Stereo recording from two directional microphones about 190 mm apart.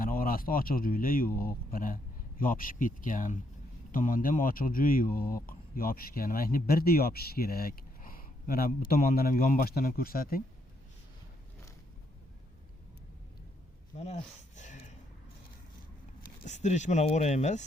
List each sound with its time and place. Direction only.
0.0 s speech: 50° left (ahead or behind)
13.9 s a sound: 35° left (ahead or behind)
16.4 s speech: 40° left (ahead or behind)